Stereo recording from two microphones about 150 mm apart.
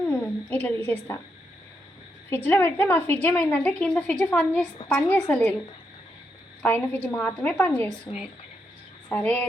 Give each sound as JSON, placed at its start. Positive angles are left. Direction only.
{"t": 0.0, "sound": "a sound", "side_deg": 10}
{"t": 0.9, "sound": "a woman's voice", "side_deg": 15}
{"t": 2.3, "sound": "a woman's voice", "side_deg": 15}
{"t": 6.6, "sound": "a woman's voice", "side_deg": 10}
{"t": 9.0, "sound": "a woman's voice", "side_deg": 10}